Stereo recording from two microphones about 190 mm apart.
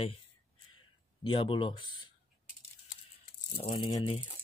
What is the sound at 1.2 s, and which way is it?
Speech, 25° left (ahead or behind).